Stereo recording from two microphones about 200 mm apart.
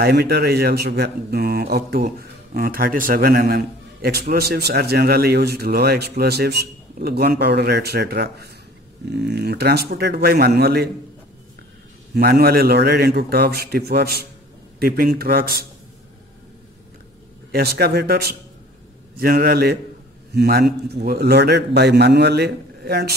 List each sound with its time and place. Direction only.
0.0 s speech: 55° right (ahead or behind)
12.1 s speech: 55° right (ahead or behind)
17.5 s a man's voice: 50° right (ahead or behind)